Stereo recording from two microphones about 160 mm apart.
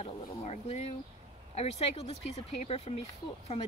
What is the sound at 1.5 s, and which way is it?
Speech, 40° left (ahead or behind).